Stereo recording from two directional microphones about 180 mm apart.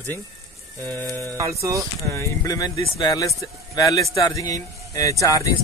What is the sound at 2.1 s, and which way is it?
Speech, 15° left (ahead or behind).